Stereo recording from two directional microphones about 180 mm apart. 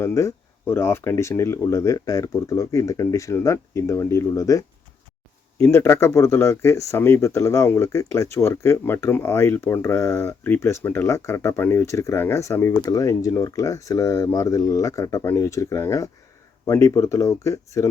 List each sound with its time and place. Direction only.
0.0 s speech: 15° left (ahead or behind)